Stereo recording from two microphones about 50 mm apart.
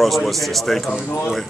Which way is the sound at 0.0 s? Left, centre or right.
Centre.